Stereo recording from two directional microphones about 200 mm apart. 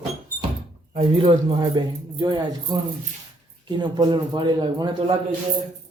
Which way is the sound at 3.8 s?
20° right (ahead or behind).